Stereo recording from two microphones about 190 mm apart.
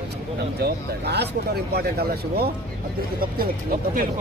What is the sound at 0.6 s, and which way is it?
Speech, 60° right (ahead or behind).